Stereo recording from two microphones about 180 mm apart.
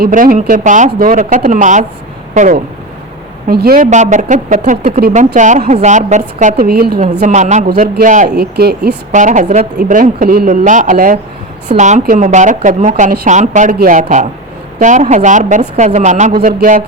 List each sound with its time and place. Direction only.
0.0 s speech: 50° right (ahead or behind)
3.4 s speech: 55° right (ahead or behind)
3.8 s speech: 40° right (ahead or behind); by 7.0 s 60° right (ahead or behind)
7.2 s speech: 40° right (ahead or behind)
8.4 s speech: 65° right (ahead or behind)
9.1 s speech: 45° right (ahead or behind)